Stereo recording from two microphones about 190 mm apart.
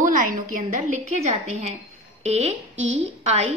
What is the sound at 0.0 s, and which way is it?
A woman's voice, 45° right (ahead or behind).